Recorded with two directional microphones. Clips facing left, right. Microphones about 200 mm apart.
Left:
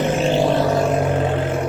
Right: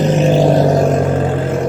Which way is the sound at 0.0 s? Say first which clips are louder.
Right 5 dB; 40° right (ahead or behind).